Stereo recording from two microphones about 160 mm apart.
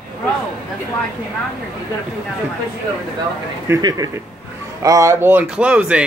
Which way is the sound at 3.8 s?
25° right (ahead or behind).